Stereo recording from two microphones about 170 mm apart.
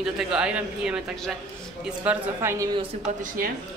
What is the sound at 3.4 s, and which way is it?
Speech, 55° right (ahead or behind).